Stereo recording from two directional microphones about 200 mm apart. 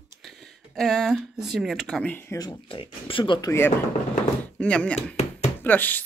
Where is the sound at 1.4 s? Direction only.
Centre (ahead or behind).